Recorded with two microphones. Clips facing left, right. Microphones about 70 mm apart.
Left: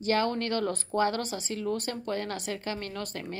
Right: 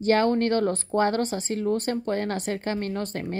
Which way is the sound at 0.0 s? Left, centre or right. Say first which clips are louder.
Right 6 dB; right.